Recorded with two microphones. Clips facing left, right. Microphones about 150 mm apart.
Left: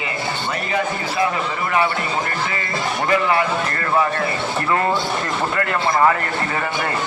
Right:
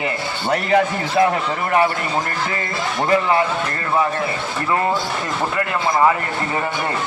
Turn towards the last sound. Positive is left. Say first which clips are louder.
# even
turn(degrees=-15)  # may be behind; listen again after turning